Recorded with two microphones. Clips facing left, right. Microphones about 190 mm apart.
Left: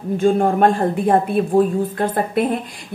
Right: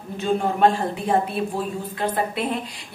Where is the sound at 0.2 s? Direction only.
50° left (ahead or behind).